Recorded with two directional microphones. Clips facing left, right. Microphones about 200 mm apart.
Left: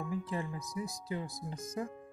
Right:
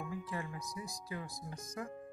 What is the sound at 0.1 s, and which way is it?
Speech, 25° left (ahead or behind).